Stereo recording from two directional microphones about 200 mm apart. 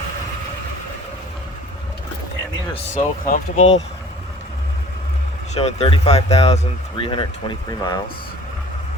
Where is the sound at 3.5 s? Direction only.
80° left.